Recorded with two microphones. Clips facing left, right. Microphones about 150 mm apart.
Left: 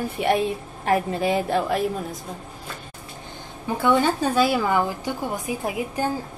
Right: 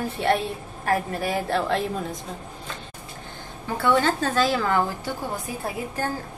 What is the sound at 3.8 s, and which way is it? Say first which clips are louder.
A woman's voice: left 1 dB; 15° left (ahead or behind).